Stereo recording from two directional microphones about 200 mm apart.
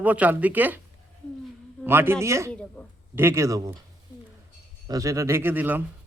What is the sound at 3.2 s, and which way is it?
Speech, 15° right (ahead or behind).